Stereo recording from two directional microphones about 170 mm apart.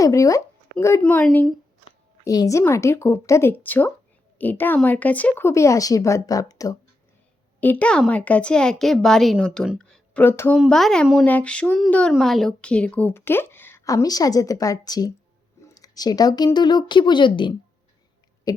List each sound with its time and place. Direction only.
0.0 s speech: 20° left (ahead or behind)
2.2 s a woman's voice: 20° left (ahead or behind)
7.6 s speech: 10° left (ahead or behind)
10.6 s a woman's voice: centre (ahead or behind); by 18.6 s 20° left (ahead or behind)